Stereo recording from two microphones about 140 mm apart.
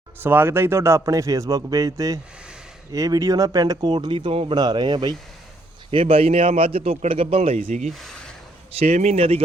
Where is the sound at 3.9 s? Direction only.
35° right (ahead or behind).